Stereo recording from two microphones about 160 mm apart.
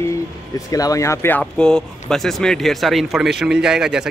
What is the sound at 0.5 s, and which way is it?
Speech, 20° left (ahead or behind).